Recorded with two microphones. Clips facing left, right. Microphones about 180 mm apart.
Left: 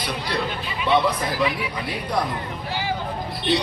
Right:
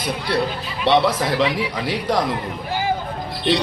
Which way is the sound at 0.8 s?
85° right.